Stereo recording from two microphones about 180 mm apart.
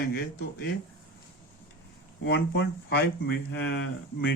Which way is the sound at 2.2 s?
70° left (ahead or behind).